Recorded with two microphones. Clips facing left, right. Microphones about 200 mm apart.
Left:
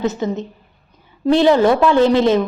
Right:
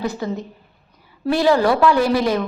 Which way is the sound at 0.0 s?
20° left (ahead or behind).